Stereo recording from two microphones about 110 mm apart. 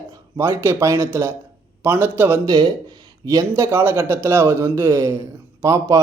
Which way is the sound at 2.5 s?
40° right (ahead or behind).